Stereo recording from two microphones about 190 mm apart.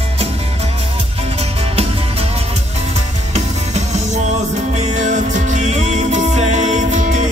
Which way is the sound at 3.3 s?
35° right (ahead or behind).